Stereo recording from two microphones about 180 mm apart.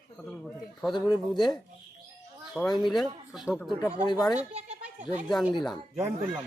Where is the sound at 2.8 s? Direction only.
Centre (ahead or behind).